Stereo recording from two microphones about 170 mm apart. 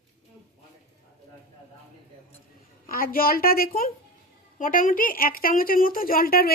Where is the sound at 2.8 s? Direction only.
60° left (ahead or behind).